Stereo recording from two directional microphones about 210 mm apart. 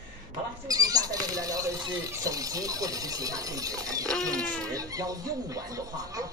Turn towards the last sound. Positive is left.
turn(degrees=-15)  # may be behind; listen again after turning